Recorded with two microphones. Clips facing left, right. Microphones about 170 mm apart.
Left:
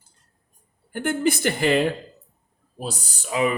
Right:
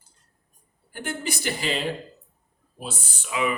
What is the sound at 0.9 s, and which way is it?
Speech, 50° left (ahead or behind).